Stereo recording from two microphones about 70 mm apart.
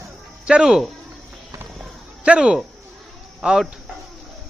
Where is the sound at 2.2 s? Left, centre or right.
Centre.